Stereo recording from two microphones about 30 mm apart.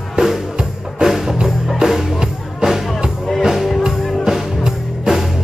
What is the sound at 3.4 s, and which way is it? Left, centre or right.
Music, centre.